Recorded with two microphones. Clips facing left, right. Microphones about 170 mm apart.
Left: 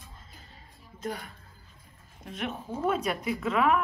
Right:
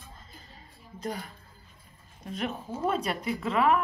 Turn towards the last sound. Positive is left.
turn(degrees=0)  # may be behind; listen again after turning